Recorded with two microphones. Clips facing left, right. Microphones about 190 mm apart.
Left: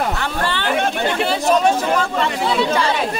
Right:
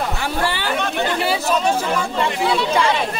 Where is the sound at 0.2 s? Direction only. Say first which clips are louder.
Even; 10° right (ahead or behind).